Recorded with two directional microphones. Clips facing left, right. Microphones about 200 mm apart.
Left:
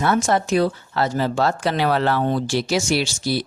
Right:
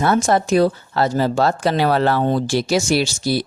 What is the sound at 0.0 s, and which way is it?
Speech, 40° right (ahead or behind).